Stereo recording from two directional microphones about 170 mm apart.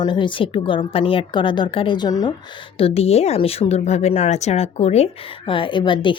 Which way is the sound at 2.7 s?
35° left (ahead or behind).